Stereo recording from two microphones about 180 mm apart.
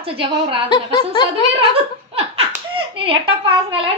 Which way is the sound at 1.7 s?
30° right (ahead or behind).